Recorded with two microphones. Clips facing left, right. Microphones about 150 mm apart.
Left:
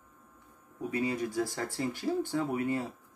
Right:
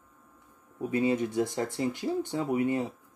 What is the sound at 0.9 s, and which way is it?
A woman's voice, 25° right (ahead or behind).